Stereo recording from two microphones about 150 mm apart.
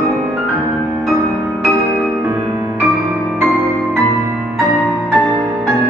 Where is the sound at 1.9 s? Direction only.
10° right (ahead or behind).